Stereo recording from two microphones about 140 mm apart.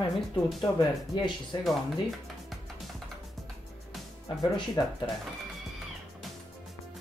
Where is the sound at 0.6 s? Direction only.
30° left (ahead or behind).